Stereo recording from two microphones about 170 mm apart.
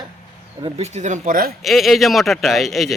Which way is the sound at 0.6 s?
40° right (ahead or behind).